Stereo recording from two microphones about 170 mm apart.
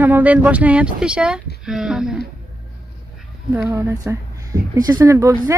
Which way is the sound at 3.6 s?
15° right (ahead or behind).